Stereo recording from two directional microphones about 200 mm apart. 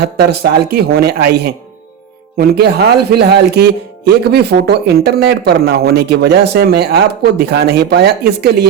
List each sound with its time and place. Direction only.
0.0 s speech: 55° right (ahead or behind)